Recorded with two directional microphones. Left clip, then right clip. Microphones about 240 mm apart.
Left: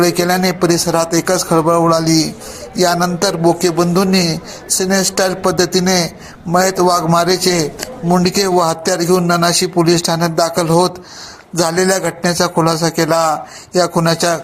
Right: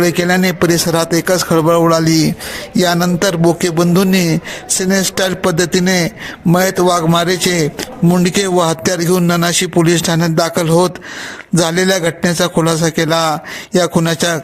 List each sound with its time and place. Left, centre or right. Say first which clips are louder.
0.0 s a man's voice: even; right